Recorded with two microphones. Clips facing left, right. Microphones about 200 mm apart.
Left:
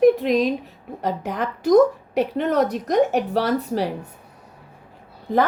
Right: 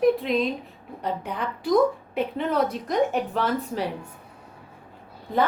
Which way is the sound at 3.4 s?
40° left (ahead or behind).